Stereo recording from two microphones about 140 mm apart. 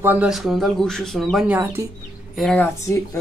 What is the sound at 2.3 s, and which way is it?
Speech, centre (ahead or behind).